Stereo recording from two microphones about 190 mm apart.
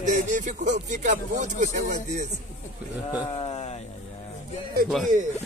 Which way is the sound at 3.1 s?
25° left (ahead or behind).